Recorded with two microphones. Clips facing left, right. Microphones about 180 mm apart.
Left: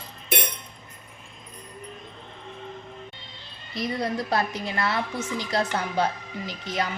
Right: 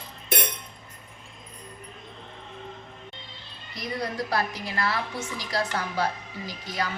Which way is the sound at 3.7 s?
25° left (ahead or behind).